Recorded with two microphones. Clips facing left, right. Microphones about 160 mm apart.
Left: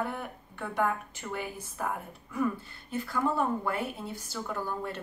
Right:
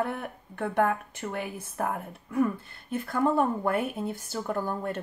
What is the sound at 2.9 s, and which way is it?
A woman's voice, 55° right (ahead or behind).